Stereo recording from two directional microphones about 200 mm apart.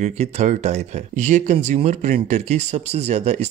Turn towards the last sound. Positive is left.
turn(degrees=-35)  # may be behind; listen again after turning